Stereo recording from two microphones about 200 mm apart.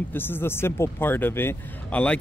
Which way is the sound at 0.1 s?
10° left (ahead or behind).